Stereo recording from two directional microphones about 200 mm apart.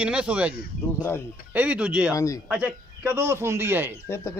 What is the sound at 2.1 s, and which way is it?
Speech, 15° left (ahead or behind).